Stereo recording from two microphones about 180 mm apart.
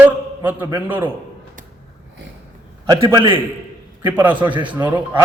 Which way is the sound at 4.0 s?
10° right (ahead or behind).